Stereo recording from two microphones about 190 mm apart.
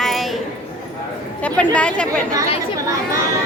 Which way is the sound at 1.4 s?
5° left (ahead or behind).